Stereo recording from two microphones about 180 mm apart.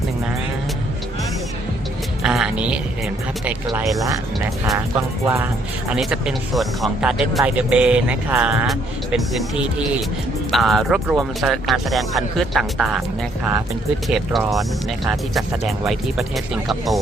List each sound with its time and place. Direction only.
2.2 s a woman's voice: 5° right (ahead or behind)
4.9 s speech: 15° right (ahead or behind)
5.9 s speech: 5° right (ahead or behind)
14.1 s speech: centre (ahead or behind)